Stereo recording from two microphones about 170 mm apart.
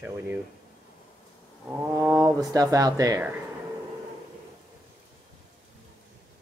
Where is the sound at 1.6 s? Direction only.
10° right (ahead or behind).